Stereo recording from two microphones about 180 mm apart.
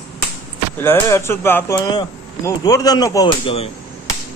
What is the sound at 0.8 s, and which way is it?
Speech, 15° left (ahead or behind).